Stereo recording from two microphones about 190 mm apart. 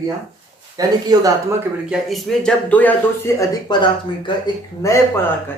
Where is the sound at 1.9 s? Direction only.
Centre (ahead or behind).